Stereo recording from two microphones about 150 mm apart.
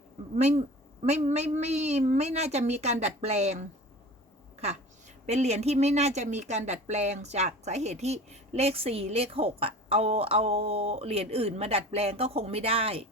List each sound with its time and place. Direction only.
0.3 s a woman's voice: 45° right (ahead or behind)
5.2 s a woman's voice: 50° right (ahead or behind)